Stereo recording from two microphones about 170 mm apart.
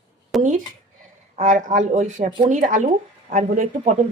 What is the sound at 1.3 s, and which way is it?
Speech, 50° right (ahead or behind).